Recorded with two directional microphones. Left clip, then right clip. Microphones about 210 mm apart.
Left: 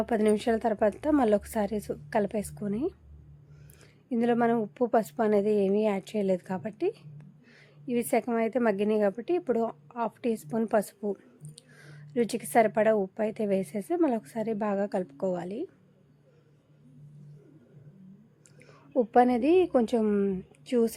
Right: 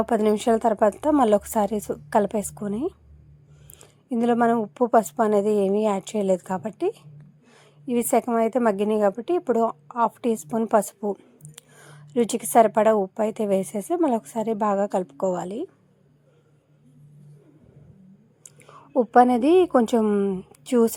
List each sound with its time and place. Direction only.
0.0 s a woman's voice: 15° right (ahead or behind)
4.1 s a woman's voice: 10° right (ahead or behind)
18.4 s a woman's voice: 10° right (ahead or behind)